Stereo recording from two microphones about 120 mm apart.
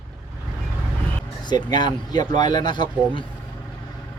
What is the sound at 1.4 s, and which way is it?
Speech, 35° left (ahead or behind).